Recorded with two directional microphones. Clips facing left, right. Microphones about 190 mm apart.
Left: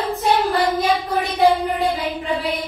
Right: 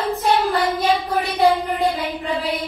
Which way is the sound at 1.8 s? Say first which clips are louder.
Even; centre (ahead or behind).